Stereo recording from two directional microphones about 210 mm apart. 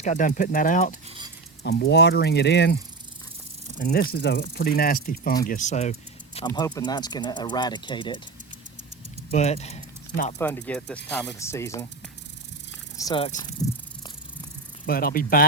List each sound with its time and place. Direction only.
0.0 s speech: 35° left (ahead or behind)
1.6 s speech: 50° left (ahead or behind)
3.8 s speech: 45° left (ahead or behind)
6.5 s speech: 15° left (ahead or behind)
9.3 s speech: 30° left (ahead or behind)
10.3 s speech: 10° left (ahead or behind)
13.0 s speech: 15° left (ahead or behind)
14.8 s speech: 45° left (ahead or behind)